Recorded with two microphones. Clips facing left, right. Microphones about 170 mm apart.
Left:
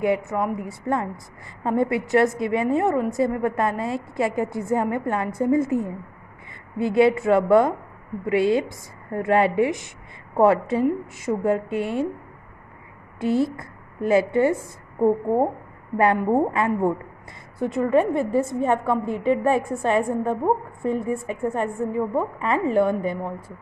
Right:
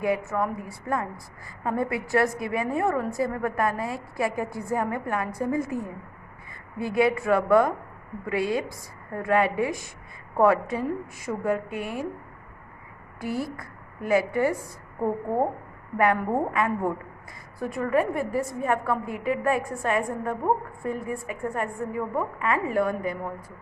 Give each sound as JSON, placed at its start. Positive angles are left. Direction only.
{"t": 0.0, "sound": "a woman's voice", "side_deg": 20}
{"t": 13.2, "sound": "a woman's voice", "side_deg": 25}
{"t": 16.2, "sound": "a woman's voice", "side_deg": 25}